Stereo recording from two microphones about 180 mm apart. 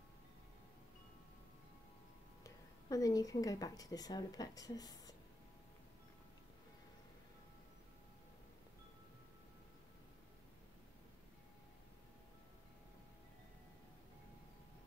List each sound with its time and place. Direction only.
2.4 s a woman's voice: 20° left (ahead or behind)